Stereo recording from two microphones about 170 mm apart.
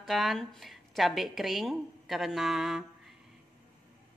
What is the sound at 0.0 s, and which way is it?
Speech, centre (ahead or behind).